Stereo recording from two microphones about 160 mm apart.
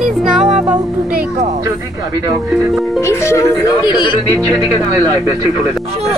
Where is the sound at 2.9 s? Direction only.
15° left (ahead or behind).